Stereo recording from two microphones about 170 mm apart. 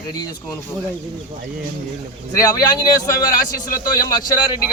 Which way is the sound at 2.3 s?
20° left (ahead or behind).